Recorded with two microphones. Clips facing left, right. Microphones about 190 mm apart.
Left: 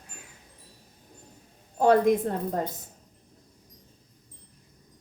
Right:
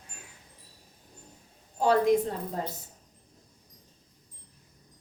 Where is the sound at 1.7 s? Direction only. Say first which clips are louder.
Left 3 dB; 50° left (ahead or behind).